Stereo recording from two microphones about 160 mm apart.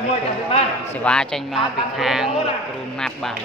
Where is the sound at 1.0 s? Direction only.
5° left (ahead or behind).